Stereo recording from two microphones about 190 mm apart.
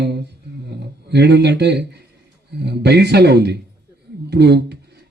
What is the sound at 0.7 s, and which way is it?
Speech, 60° right (ahead or behind).